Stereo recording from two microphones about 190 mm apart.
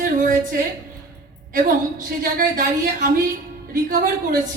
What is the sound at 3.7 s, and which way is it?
Speech, 50° right (ahead or behind).